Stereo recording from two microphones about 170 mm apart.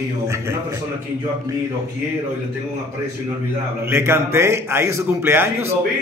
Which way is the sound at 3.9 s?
15° right (ahead or behind).